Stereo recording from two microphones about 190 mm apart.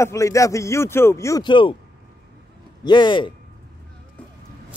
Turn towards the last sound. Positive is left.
turn(degrees=25)  # may be behind; listen again after turning